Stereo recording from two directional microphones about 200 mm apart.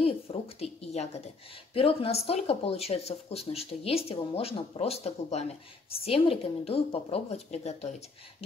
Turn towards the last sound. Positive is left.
turn(degrees=30)  # may be behind; listen again after turning